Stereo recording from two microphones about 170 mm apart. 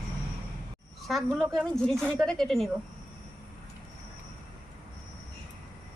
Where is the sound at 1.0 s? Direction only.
Centre (ahead or behind).